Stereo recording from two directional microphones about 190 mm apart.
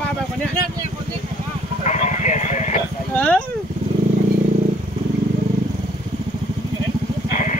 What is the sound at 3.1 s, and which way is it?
Speech, 5° left (ahead or behind).